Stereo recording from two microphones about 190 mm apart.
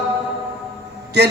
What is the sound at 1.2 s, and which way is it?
Speech, 60° right (ahead or behind).